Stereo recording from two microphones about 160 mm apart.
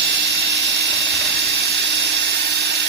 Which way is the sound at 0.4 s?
90° right.